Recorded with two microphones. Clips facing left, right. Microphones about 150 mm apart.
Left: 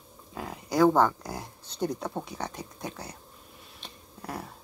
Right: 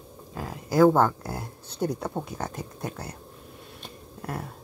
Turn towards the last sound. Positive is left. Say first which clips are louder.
# right 3 dB
turn(degrees=-5)  # may be behind; listen again after turning